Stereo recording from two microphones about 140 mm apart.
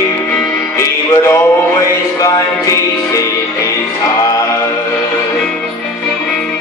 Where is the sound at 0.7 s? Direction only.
20° left (ahead or behind).